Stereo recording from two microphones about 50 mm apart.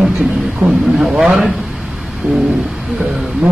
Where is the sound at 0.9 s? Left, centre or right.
Centre.